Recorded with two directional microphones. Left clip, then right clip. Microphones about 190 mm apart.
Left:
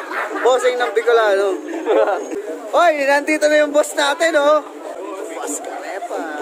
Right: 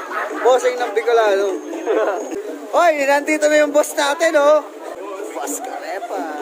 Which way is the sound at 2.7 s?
Centre (ahead or behind).